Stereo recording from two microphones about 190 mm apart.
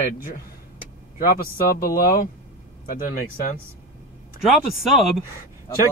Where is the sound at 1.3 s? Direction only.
50° left (ahead or behind).